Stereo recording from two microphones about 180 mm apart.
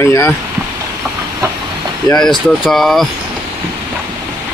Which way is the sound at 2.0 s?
5° left (ahead or behind).